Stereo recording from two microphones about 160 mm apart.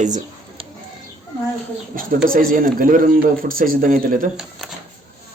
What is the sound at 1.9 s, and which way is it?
Speech, 60° right (ahead or behind).